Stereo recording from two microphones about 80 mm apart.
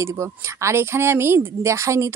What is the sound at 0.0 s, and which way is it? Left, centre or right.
Speech, right.